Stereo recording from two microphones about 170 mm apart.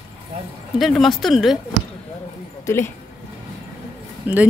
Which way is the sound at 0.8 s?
Centre (ahead or behind).